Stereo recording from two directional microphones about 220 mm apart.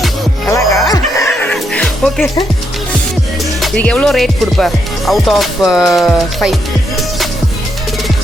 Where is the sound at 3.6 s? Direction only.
5° left (ahead or behind).